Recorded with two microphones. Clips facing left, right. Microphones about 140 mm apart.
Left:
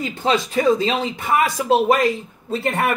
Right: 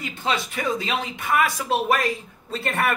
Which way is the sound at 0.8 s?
25° left (ahead or behind).